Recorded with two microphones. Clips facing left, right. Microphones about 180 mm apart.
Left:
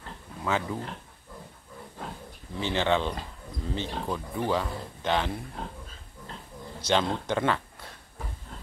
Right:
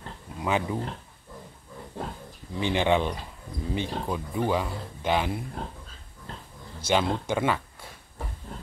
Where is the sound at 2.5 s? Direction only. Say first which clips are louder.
Right 2 dB; 15° right (ahead or behind).